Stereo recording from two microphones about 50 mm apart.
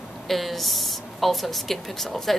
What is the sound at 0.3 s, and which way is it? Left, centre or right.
A woman's voice, centre.